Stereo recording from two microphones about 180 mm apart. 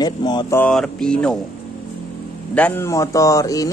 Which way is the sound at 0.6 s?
5° left (ahead or behind).